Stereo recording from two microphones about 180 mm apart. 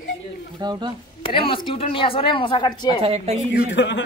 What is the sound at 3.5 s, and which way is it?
Speech, 85° left.